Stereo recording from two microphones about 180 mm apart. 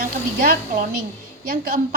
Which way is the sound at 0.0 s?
50° right (ahead or behind).